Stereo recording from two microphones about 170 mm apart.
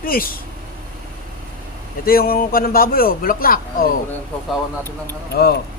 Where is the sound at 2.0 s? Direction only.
60° left (ahead or behind).